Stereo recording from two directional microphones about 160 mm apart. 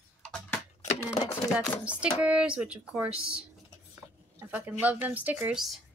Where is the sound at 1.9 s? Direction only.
5° right (ahead or behind).